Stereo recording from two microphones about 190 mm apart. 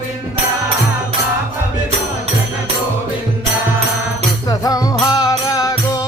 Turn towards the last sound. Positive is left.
turn(degrees=20)  # may be behind; listen again after turning